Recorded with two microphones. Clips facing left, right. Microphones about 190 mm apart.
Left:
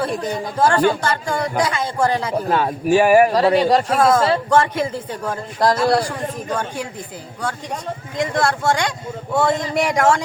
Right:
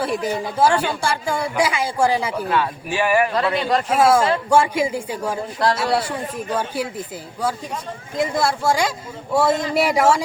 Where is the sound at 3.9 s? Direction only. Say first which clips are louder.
Even; 10° right (ahead or behind).